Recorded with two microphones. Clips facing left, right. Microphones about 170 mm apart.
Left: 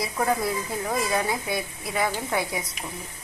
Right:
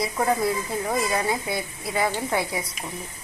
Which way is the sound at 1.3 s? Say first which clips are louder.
Right 1 dB; 25° right (ahead or behind).